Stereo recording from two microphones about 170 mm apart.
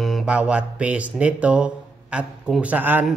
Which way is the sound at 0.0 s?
5° right (ahead or behind).